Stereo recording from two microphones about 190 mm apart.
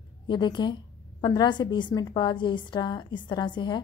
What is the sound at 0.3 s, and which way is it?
A woman's voice, 25° left (ahead or behind).